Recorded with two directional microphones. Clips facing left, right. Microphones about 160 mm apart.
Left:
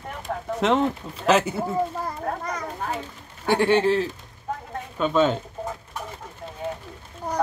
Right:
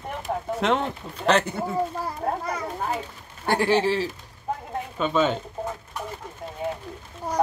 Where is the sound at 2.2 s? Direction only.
30° right (ahead or behind).